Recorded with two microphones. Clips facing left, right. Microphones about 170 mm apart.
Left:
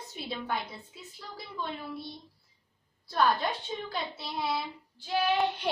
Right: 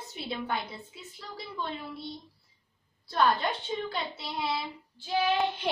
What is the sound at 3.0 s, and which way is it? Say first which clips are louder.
A woman's voice: right 1 dB; centre (ahead or behind).